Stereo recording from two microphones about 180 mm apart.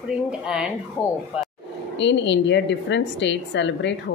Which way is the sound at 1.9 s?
85° left.